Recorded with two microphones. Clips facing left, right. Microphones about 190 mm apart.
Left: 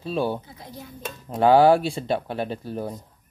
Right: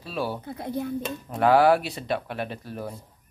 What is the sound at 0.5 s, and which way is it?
Speech, 60° right (ahead or behind).